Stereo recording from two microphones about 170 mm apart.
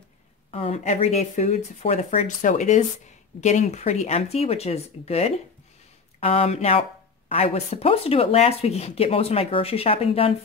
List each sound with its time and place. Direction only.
0.5 s speech: 35° left (ahead or behind)